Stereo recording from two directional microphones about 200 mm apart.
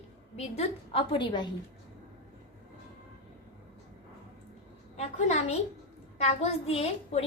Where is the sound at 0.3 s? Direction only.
30° left (ahead or behind).